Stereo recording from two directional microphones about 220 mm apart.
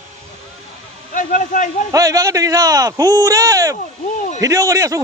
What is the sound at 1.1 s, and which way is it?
Speech, 35° left (ahead or behind).